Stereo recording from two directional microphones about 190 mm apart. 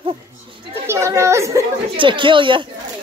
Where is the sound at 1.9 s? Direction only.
25° right (ahead or behind).